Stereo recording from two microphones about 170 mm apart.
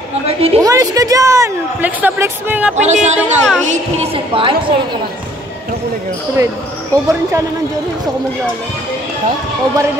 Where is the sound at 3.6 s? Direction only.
30° right (ahead or behind).